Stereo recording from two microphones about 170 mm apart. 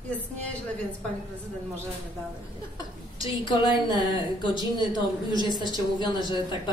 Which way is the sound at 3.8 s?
25° left (ahead or behind).